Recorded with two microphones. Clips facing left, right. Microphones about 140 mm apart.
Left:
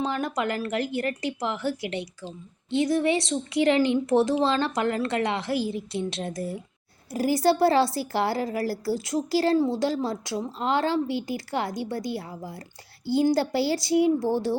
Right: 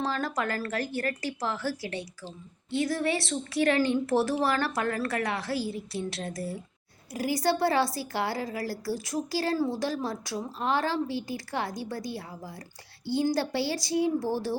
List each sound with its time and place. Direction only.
0.0 s a woman's voice: 20° left (ahead or behind)